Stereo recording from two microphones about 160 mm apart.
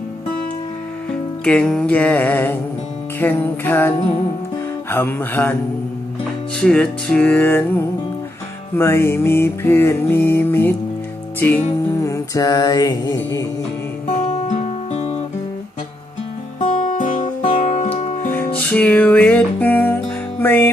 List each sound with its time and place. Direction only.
1.5 s music: 5° left (ahead or behind)
6.6 s music: 5° left (ahead or behind)
8.7 s music: 15° left (ahead or behind)
14.3 s music: 40° left (ahead or behind)
16.6 s music: 55° left (ahead or behind)
17.5 s music: 40° left (ahead or behind)
18.3 s music: 10° left (ahead or behind)